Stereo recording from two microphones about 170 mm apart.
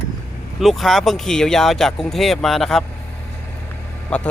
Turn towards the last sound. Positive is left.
turn(degrees=5)  # may be behind; listen again after turning